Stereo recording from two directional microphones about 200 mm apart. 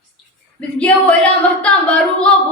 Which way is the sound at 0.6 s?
5° left (ahead or behind).